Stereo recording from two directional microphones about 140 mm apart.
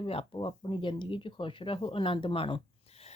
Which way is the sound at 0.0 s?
40° left (ahead or behind).